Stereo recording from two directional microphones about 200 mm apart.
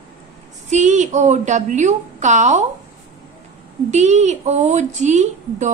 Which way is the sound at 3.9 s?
35° right (ahead or behind).